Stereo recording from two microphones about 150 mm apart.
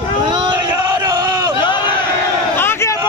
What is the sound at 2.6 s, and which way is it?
Crowd, 15° left (ahead or behind).